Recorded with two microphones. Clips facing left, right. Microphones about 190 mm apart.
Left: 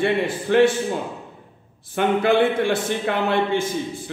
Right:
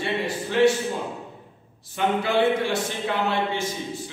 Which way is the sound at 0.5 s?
60° left (ahead or behind).